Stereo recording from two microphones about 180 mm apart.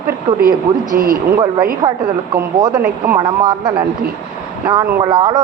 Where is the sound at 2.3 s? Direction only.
20° right (ahead or behind).